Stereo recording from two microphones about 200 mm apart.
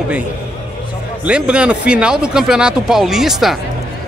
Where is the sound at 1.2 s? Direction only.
5° right (ahead or behind).